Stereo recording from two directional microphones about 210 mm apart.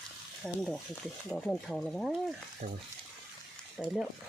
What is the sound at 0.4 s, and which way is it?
Speech, centre (ahead or behind).